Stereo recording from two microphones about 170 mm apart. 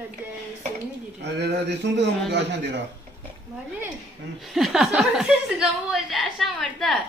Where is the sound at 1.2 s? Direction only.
80° right.